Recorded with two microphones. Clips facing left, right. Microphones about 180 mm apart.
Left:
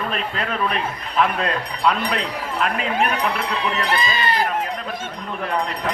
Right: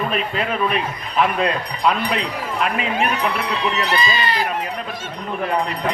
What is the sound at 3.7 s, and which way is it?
Speech, 55° left (ahead or behind).